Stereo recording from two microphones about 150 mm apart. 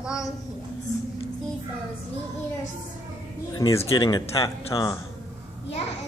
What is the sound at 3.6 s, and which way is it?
Speech, 20° left (ahead or behind).